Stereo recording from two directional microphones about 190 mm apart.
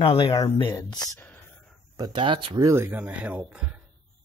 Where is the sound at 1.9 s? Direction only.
25° right (ahead or behind); by 3.7 s 5° right (ahead or behind).